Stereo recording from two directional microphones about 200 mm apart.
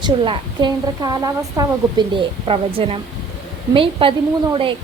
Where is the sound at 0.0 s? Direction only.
20° right (ahead or behind).